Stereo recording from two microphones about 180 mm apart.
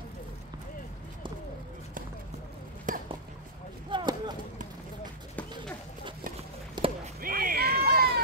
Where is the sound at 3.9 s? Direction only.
25° right (ahead or behind).